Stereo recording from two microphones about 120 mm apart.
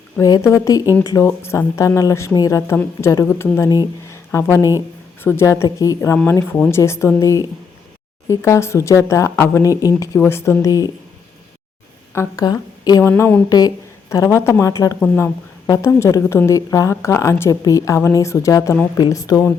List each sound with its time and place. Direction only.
0.2 s a woman's voice: 30° left (ahead or behind)
12.1 s a woman's voice: 25° left (ahead or behind)
13.0 s a woman's voice: 20° left (ahead or behind)
13.5 s a woman's voice: 30° left (ahead or behind)
15.0 s a woman's voice: 15° left (ahead or behind)
15.6 s a woman's voice: 25° left (ahead or behind)